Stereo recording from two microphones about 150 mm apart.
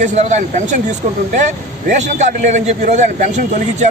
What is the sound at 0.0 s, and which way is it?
A man's voice, 50° right (ahead or behind).